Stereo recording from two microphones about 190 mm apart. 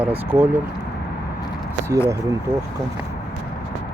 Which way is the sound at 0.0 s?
10° right (ahead or behind).